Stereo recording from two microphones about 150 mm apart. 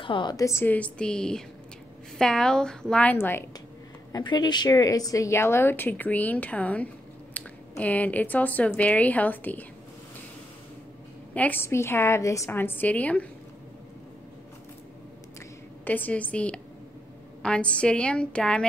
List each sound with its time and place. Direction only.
0.0 s a woman's voice: 30° left (ahead or behind); by 3.4 s 15° left (ahead or behind)
4.1 s a woman's voice: 30° left (ahead or behind); by 9.7 s 10° left (ahead or behind)
11.3 s a woman's voice: 10° left (ahead or behind)
15.8 s a woman's voice: 10° left (ahead or behind)